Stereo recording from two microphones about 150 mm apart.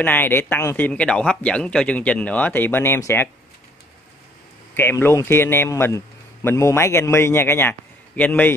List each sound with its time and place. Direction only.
0.0 s speech: 15° left (ahead or behind)
4.7 s speech: 15° left (ahead or behind)